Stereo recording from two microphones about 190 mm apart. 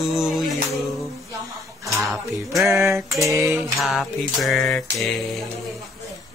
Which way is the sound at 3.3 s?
15° right (ahead or behind).